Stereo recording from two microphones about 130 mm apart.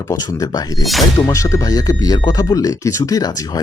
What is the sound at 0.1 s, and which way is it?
Speech, 25° left (ahead or behind).